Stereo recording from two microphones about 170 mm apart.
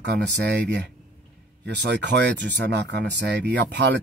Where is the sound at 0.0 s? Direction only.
85° right.